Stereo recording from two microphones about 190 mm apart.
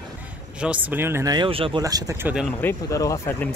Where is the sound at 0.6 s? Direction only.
5° right (ahead or behind).